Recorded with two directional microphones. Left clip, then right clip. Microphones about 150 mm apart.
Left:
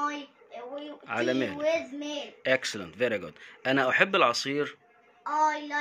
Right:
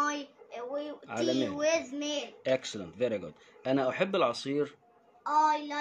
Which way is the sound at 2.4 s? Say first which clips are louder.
Left 6 dB; centre (ahead or behind).